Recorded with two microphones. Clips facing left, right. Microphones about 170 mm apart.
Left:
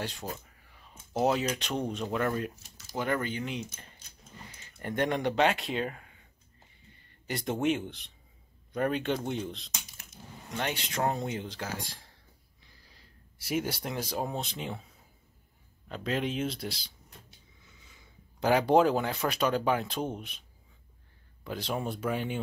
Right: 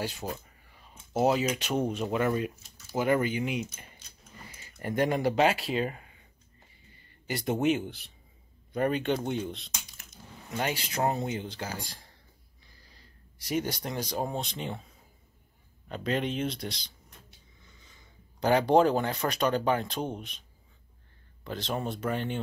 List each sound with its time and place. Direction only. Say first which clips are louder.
0.0 s speech: right 3 dB; centre (ahead or behind)
7.2 s speech: right 2 dB; 5° right (ahead or behind)
13.5 s speech: right 1 dB; 5° left (ahead or behind)
15.9 s speech: right 1 dB; centre (ahead or behind)
21.5 s speech: right 1 dB; 10° left (ahead or behind)